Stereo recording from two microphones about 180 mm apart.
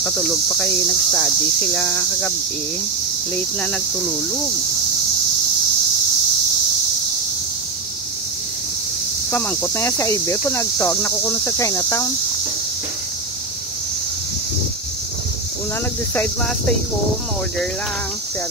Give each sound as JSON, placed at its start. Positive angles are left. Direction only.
{"t": 0.0, "sound": "speech", "side_deg": 5}
{"t": 9.3, "sound": "speech", "side_deg": 10}